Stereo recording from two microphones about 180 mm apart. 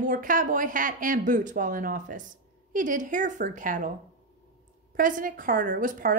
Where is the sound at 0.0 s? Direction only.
50° right (ahead or behind).